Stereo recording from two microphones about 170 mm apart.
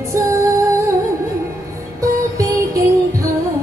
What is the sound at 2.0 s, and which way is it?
Music, 20° right (ahead or behind).